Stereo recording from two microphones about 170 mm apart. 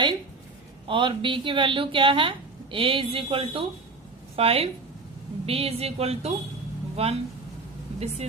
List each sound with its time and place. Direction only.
0.9 s a woman's voice: 30° right (ahead or behind)